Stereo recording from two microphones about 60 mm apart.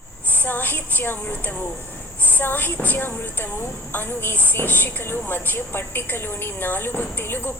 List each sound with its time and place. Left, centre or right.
0.3 s a woman's voice: left